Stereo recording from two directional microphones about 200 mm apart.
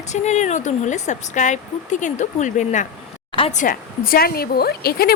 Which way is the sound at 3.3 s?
25° left (ahead or behind).